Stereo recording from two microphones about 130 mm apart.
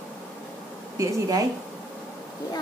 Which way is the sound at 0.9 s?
25° right (ahead or behind).